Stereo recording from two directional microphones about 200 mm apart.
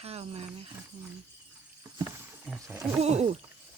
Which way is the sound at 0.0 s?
30° right (ahead or behind).